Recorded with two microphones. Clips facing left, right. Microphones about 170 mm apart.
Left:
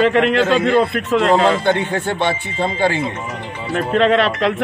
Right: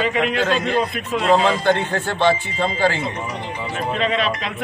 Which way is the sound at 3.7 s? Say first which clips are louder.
Left 7 dB; 65° left (ahead or behind).